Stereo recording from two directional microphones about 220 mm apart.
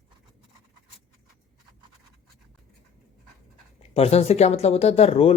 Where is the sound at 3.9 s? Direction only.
30° left (ahead or behind).